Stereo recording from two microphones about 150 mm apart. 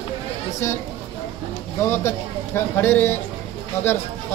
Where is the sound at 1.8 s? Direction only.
15° left (ahead or behind).